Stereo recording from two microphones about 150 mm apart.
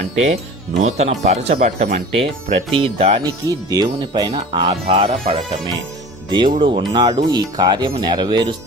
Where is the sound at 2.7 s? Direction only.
40° right (ahead or behind).